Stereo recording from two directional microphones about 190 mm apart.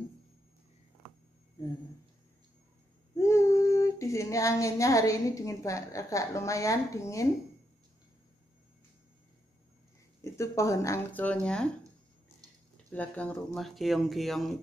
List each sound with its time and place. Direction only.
3.2 s female singing: 15° left (ahead or behind)
10.2 s speech: 15° left (ahead or behind)
12.9 s speech: 10° left (ahead or behind)